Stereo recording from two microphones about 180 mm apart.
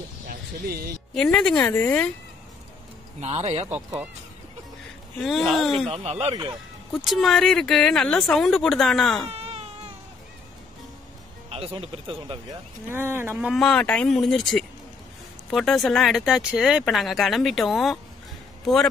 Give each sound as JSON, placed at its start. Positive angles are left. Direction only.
{"t": 1.1, "sound": "speech", "side_deg": 5}
{"t": 3.2, "sound": "speech", "side_deg": -35}
{"t": 5.2, "sound": "speech", "side_deg": 0}
{"t": 5.9, "sound": "speech", "side_deg": -35}
{"t": 7.1, "sound": "speech", "side_deg": 0}
{"t": 9.3, "sound": "baby cry", "side_deg": -35}
{"t": 11.5, "sound": "speech", "side_deg": -35}
{"t": 12.8, "sound": "speech", "side_deg": -15}
{"t": 13.5, "sound": "speech", "side_deg": 5}